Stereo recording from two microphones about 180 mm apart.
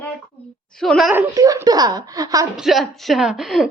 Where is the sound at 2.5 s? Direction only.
Centre (ahead or behind).